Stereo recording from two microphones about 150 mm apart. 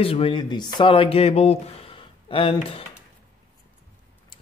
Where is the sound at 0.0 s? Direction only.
40° left (ahead or behind).